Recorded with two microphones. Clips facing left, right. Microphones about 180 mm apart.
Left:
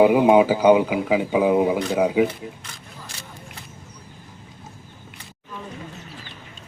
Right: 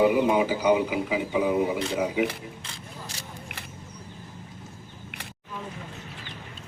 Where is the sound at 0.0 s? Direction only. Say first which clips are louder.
Left 6 dB; 90° left.